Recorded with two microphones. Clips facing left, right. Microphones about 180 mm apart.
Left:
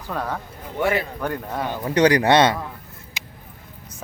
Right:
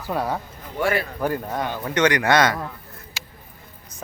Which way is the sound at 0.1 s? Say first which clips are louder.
Right 3 dB; 10° right (ahead or behind).